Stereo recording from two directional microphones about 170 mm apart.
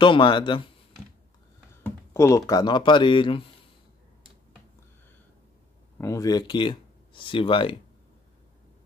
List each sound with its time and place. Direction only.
0.0 s speech: 30° left (ahead or behind)
1.8 s speech: 15° left (ahead or behind)
5.9 s speech: 20° left (ahead or behind)